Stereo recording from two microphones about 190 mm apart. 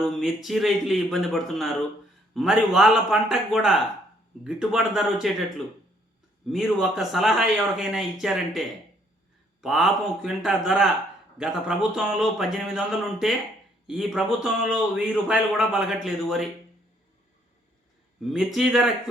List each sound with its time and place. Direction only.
0.4 s a man's voice: centre (ahead or behind)
6.5 s a man's voice: centre (ahead or behind)
18.2 s a man's voice: centre (ahead or behind)